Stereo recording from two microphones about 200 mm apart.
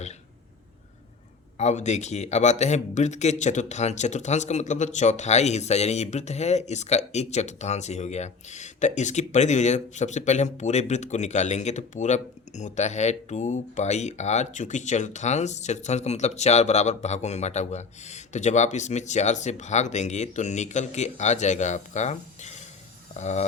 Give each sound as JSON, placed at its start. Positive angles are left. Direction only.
{"t": 1.5, "sound": "a man's voice", "side_deg": 35}